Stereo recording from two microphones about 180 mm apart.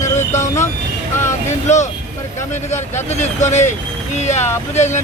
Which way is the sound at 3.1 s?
40° left (ahead or behind).